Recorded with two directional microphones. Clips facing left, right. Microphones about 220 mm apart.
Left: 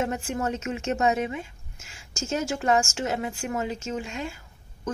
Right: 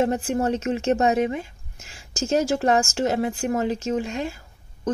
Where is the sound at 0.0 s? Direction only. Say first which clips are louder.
Right 6 dB; 35° right (ahead or behind).